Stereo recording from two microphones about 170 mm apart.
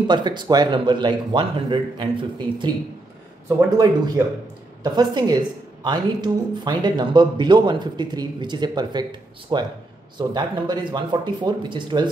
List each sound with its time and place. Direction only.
0.0 s speech: 25° right (ahead or behind)